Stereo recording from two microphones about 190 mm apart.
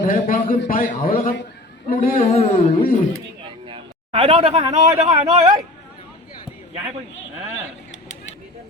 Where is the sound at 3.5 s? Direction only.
25° right (ahead or behind).